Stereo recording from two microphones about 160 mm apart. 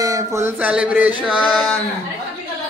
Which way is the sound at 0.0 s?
20° right (ahead or behind).